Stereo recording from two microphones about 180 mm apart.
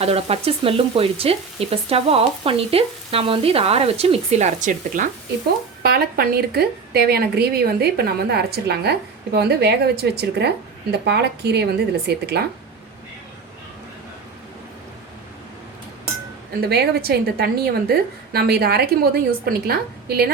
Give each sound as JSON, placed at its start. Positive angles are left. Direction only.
{"t": 0.0, "sound": "frying", "side_deg": -35}
{"t": 5.8, "sound": "speech", "side_deg": -60}
{"t": 16.6, "sound": "speech", "side_deg": -65}